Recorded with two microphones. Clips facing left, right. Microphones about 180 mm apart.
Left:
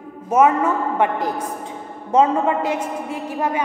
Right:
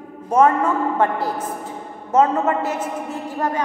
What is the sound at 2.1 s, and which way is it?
A woman's voice, 10° left (ahead or behind).